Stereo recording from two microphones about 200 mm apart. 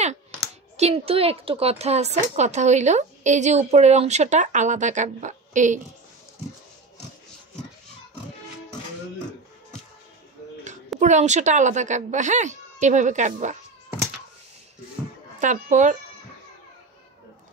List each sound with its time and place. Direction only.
0.7 s speech: 30° right (ahead or behind)
11.0 s speech: 35° right (ahead or behind)
15.4 s speech: 40° right (ahead or behind)